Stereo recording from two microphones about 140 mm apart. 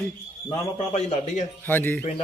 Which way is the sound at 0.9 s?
50° left (ahead or behind).